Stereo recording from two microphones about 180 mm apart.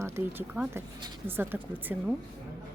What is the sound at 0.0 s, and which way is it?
Speech, 10° right (ahead or behind).